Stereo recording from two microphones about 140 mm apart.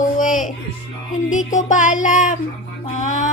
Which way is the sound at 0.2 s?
65° left (ahead or behind).